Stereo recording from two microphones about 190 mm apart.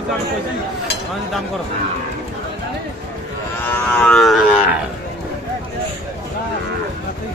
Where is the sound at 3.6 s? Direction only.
10° left (ahead or behind).